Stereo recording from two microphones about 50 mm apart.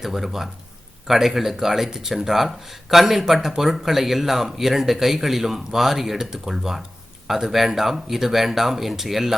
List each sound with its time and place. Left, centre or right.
0.0 s speech: centre